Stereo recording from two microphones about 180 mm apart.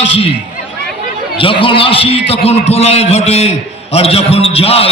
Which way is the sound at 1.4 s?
30° left (ahead or behind).